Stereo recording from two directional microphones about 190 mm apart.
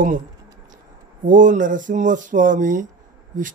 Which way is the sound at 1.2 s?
40° right (ahead or behind).